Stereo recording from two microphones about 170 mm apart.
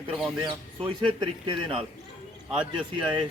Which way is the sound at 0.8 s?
30° right (ahead or behind).